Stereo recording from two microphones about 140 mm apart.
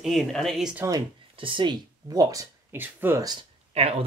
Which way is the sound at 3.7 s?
45° right (ahead or behind).